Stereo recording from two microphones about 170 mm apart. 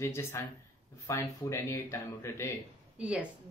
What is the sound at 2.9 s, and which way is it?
Speech, 10° right (ahead or behind).